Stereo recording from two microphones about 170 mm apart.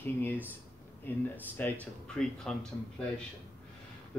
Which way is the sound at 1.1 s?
10° left (ahead or behind).